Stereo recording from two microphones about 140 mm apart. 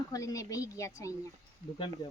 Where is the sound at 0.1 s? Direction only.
25° left (ahead or behind).